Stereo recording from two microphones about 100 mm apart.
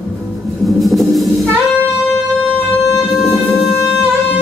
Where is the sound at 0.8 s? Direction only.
Centre (ahead or behind).